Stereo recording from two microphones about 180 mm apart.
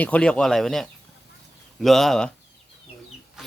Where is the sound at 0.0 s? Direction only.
5° left (ahead or behind).